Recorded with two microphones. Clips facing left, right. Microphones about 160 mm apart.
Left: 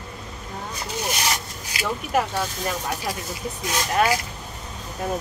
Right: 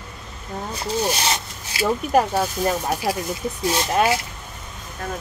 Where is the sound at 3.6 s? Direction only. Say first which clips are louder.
Right 2 dB; 25° right (ahead or behind).